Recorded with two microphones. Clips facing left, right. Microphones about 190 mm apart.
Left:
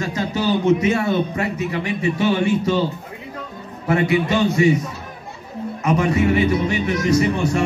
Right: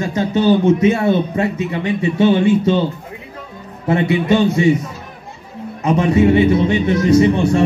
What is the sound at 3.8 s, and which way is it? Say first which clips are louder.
Speech: right 2 dB; 25° right (ahead or behind).